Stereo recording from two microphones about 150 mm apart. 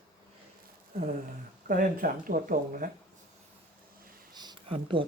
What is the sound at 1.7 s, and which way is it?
Speech, 70° right (ahead or behind).